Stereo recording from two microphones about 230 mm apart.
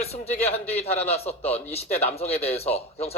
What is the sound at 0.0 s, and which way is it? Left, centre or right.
Speech, left.